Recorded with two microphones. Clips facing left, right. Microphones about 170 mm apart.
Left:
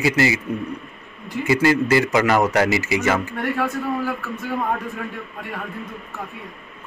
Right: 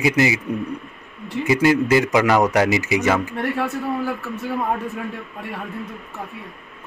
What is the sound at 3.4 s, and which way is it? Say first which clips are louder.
Speech: even; 25° right (ahead or behind).